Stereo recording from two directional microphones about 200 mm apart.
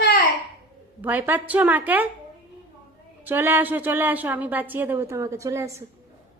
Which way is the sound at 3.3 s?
10° right (ahead or behind).